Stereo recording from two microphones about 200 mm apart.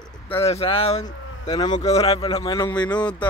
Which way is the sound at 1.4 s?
20° left (ahead or behind).